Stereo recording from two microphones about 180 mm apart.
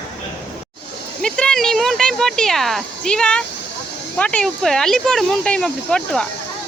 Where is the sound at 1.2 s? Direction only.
5° left (ahead or behind).